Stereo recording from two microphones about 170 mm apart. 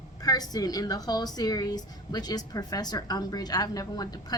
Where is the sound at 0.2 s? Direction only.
20° left (ahead or behind).